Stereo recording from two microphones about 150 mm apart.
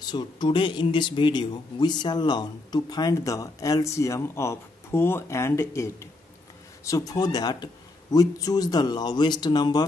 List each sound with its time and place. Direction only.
0.1 s speech: 30° left (ahead or behind)